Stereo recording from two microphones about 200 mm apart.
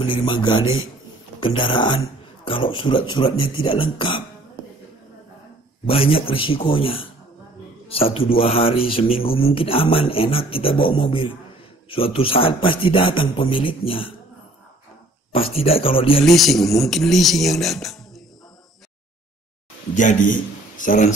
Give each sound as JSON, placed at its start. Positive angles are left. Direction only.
{"t": 0.0, "sound": "a man's voice", "side_deg": 25}
{"t": 5.9, "sound": "a man's voice", "side_deg": 30}
{"t": 15.3, "sound": "a man's voice", "side_deg": 30}
{"t": 16.3, "sound": "speech", "side_deg": 0}
{"t": 20.0, "sound": "a man's voice", "side_deg": 40}